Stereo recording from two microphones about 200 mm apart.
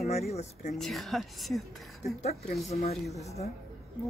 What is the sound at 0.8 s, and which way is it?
Speech, centre (ahead or behind).